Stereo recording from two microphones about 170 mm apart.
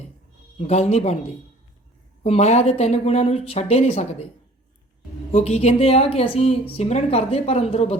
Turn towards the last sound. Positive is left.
turn(degrees=35)  # may be behind; listen again after turning